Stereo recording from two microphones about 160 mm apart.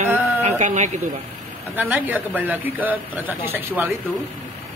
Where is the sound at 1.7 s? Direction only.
10° right (ahead or behind).